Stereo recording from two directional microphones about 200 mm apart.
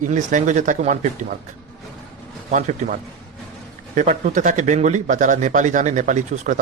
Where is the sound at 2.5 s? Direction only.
40° right (ahead or behind).